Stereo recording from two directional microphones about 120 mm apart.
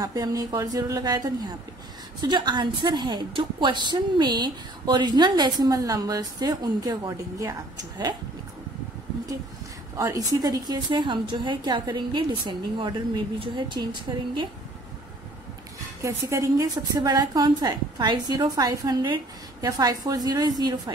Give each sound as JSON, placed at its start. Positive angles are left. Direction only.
{"t": 0.0, "sound": "a woman's voice", "side_deg": -30}
{"t": 9.9, "sound": "a woman's voice", "side_deg": -30}
{"t": 16.0, "sound": "a woman's voice", "side_deg": -25}